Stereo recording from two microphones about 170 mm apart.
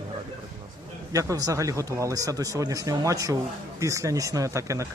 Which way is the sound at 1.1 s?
20° right (ahead or behind).